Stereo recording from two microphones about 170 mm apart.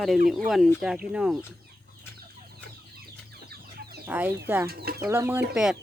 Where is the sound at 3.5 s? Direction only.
65° right (ahead or behind).